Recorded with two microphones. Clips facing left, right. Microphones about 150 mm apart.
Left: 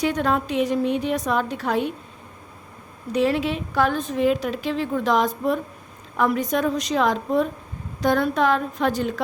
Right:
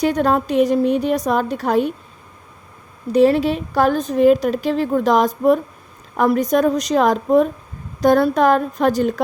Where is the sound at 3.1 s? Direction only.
35° right (ahead or behind).